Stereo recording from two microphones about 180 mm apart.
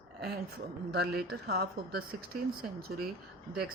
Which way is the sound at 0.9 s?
65° right (ahead or behind).